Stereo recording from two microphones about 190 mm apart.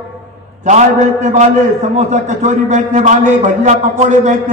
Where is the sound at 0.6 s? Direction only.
40° right (ahead or behind).